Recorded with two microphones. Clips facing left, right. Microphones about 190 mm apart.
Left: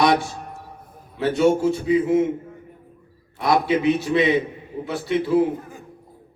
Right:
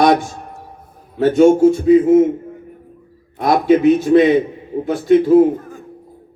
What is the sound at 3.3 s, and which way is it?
A man's voice, 50° right (ahead or behind).